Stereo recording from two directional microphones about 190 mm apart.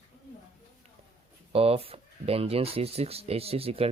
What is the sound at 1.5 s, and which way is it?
Speech, 30° right (ahead or behind).